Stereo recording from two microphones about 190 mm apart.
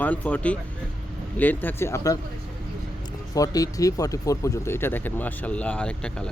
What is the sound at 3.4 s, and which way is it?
Speech, 20° left (ahead or behind).